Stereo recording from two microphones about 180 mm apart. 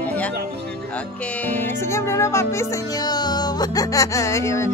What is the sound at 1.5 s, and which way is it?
Speech, 15° left (ahead or behind).